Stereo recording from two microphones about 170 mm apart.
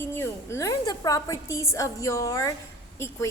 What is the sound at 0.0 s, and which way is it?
A woman's voice, 15° left (ahead or behind).